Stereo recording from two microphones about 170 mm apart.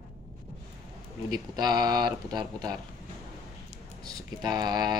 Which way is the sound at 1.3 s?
25° right (ahead or behind).